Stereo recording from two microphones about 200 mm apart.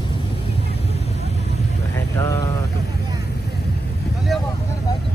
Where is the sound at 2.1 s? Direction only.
15° left (ahead or behind).